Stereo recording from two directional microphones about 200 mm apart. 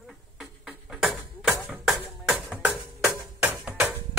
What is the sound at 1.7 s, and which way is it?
Music, 5° right (ahead or behind).